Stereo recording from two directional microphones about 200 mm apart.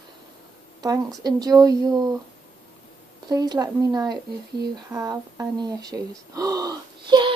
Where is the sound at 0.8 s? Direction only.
20° right (ahead or behind).